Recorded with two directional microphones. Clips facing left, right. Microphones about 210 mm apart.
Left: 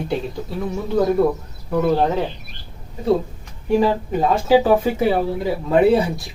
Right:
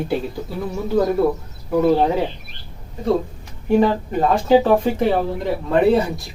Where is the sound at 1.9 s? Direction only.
5° right (ahead or behind).